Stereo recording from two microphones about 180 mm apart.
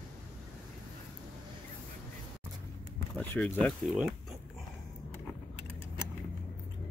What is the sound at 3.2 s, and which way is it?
Speech, 10° left (ahead or behind).